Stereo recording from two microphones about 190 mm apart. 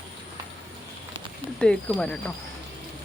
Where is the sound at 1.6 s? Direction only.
5° left (ahead or behind).